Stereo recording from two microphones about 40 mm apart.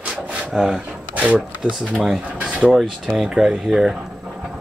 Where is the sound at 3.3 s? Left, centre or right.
Centre.